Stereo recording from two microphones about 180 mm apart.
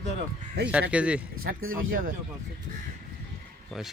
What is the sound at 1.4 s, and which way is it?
Speech, 50° right (ahead or behind).